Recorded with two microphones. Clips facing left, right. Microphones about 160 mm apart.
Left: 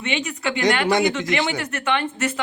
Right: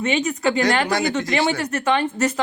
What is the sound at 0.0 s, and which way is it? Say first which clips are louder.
Speech: right 5 dB; 40° right (ahead or behind).